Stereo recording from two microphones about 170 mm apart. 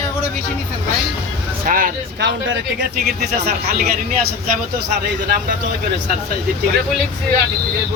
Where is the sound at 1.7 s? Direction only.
55° right (ahead or behind).